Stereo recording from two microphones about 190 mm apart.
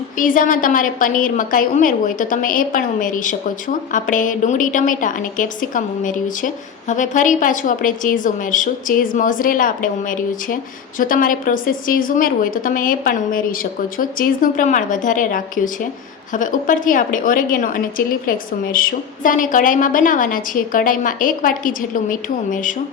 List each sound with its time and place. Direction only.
0.2 s a woman's voice: 45° left (ahead or behind)